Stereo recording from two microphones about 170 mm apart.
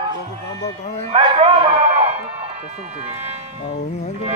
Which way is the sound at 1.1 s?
30° right (ahead or behind).